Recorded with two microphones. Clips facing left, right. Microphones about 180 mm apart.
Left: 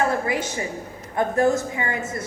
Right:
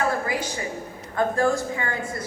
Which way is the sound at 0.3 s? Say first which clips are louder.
Left 2 dB; 25° left (ahead or behind).